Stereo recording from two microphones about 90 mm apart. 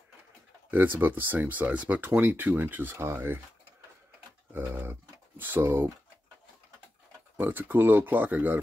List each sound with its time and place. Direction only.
0.7 s speech: 20° right (ahead or behind)
4.5 s typing: 25° right (ahead or behind)
5.4 s speech: 20° right (ahead or behind)
7.3 s speech: 20° right (ahead or behind)